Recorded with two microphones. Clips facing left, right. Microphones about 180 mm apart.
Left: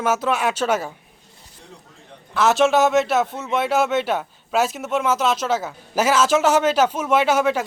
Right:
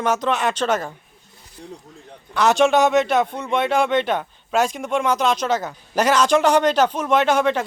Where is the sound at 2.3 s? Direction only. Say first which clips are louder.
Right 1 dB; centre (ahead or behind).